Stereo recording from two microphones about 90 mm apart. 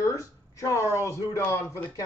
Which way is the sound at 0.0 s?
35° left (ahead or behind).